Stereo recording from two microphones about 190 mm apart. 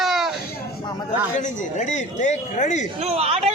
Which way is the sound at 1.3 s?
40° left (ahead or behind).